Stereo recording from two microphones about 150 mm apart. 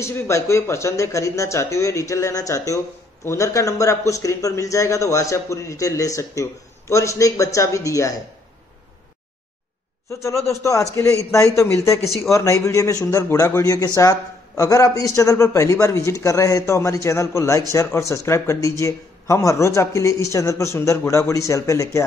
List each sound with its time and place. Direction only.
0.0 s a man's voice: 20° left (ahead or behind)
10.2 s a man's voice: 20° left (ahead or behind)